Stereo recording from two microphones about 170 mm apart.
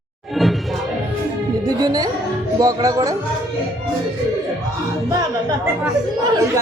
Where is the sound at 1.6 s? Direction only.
20° right (ahead or behind).